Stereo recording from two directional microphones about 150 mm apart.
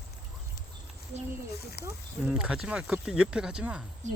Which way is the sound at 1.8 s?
90° left.